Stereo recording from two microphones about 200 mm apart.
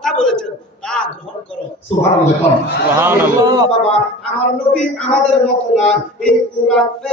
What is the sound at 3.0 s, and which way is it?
Speech, 10° right (ahead or behind).